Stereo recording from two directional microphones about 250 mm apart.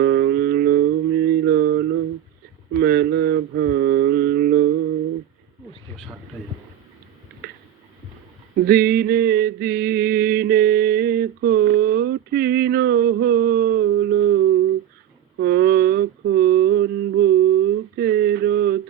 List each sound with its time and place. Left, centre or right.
0.0 s music: right
2.7 s mantra: right
8.6 s mantra: right